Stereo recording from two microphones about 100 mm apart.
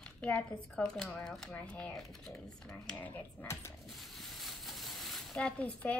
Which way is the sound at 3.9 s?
Centre (ahead or behind).